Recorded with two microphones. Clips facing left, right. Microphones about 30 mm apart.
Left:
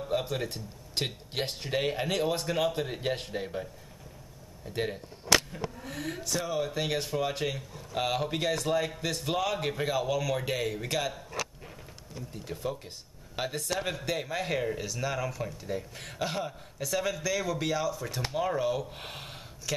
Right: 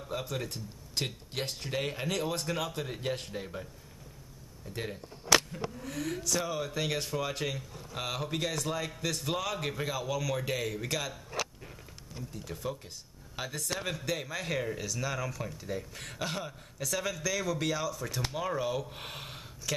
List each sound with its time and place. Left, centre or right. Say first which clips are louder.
0.2 s speech: left 3 dB; left
4.6 s speech: left 6 dB; left
12.5 s speech: left 5 dB; centre
13.4 s speech: left 4 dB; left
13.7 s speech: even; centre